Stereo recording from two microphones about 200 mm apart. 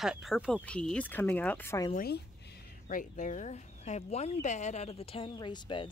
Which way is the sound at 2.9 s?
40° left (ahead or behind).